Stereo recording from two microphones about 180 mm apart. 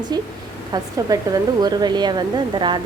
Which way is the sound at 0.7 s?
20° right (ahead or behind).